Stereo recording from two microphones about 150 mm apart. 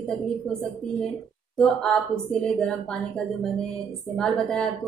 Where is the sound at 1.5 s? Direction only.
5° left (ahead or behind).